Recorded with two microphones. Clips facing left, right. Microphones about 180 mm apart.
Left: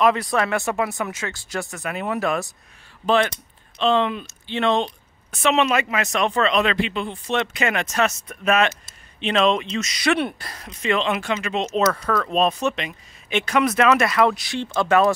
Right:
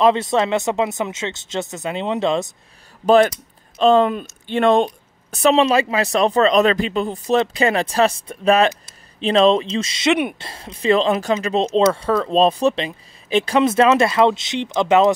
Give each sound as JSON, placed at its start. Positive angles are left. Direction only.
{"t": 0.0, "sound": "speech", "side_deg": -25}
{"t": 3.7, "sound": "speech", "side_deg": -40}